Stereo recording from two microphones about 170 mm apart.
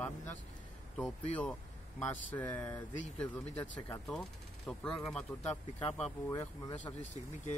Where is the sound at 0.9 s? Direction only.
5° left (ahead or behind).